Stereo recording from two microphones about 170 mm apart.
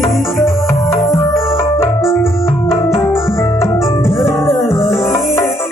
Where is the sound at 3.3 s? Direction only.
15° left (ahead or behind).